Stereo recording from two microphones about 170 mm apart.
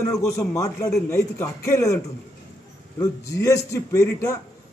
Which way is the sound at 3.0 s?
20° left (ahead or behind).